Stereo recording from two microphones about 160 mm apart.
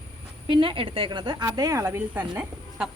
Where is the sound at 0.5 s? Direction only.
30° right (ahead or behind).